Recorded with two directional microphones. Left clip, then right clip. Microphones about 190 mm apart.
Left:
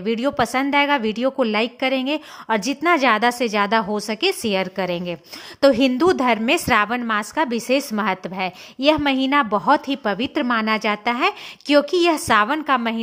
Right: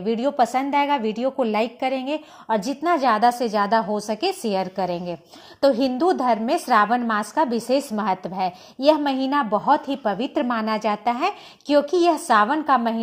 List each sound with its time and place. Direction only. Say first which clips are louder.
0.0 s a woman's voice: even; 20° left (ahead or behind)